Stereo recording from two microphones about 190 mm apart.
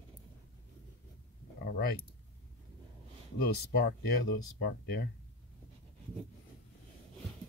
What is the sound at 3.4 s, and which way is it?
Speech, 55° left (ahead or behind).